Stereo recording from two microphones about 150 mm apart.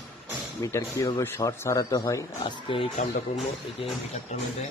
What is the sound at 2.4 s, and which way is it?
Speech, 35° left (ahead or behind).